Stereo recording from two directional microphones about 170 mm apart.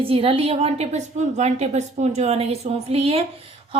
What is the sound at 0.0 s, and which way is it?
A woman's voice, 35° right (ahead or behind).